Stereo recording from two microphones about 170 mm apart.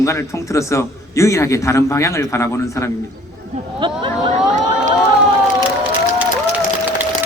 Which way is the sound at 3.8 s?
30° right (ahead or behind).